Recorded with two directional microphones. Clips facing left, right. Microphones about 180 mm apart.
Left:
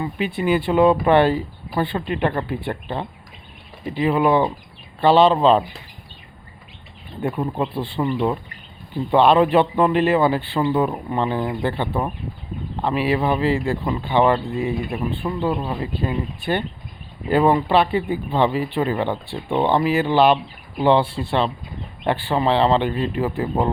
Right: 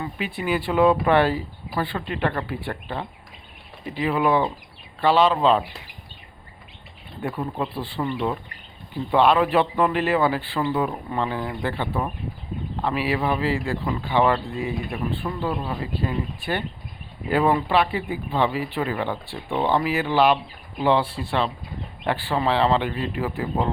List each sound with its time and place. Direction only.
0.0 s speech: 20° left (ahead or behind)
7.2 s speech: 20° left (ahead or behind)
9.1 s speech: 25° left (ahead or behind)